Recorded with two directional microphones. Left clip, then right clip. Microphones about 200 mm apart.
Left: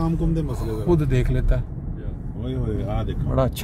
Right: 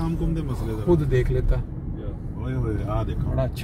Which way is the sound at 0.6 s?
35° left (ahead or behind).